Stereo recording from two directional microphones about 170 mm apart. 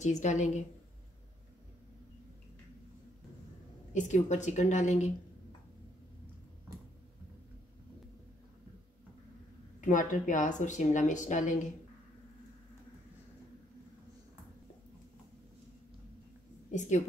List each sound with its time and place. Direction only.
0.0 s speech: 45° left (ahead or behind)
3.9 s speech: 45° left (ahead or behind)
9.8 s speech: 50° left (ahead or behind)